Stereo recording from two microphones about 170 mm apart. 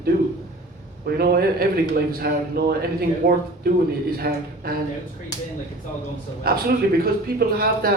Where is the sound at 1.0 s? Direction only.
65° right (ahead or behind).